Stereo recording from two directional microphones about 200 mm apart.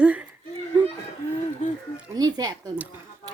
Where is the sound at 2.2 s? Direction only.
20° right (ahead or behind).